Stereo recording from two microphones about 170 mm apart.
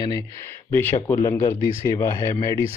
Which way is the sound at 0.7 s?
10° left (ahead or behind).